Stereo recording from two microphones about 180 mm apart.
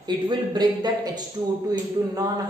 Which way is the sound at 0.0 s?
25° right (ahead or behind).